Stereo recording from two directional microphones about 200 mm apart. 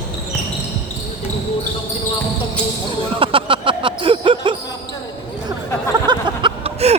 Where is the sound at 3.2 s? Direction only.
25° right (ahead or behind).